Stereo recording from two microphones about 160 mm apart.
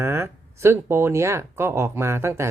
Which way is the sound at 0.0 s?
15° right (ahead or behind).